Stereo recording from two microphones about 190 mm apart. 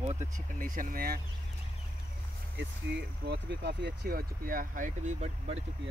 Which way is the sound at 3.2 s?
60° right (ahead or behind).